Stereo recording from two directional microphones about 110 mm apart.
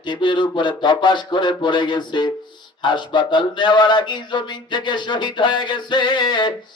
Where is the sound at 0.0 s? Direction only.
45° left (ahead or behind).